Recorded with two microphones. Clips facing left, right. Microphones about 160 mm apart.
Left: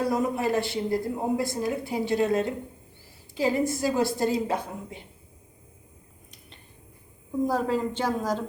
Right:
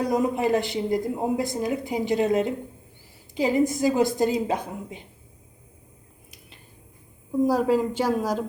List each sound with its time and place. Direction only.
0.0 s speech: 15° right (ahead or behind)
7.4 s speech: 10° right (ahead or behind)